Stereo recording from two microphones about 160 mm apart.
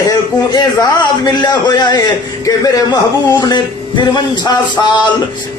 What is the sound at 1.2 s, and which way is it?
Music, 25° left (ahead or behind).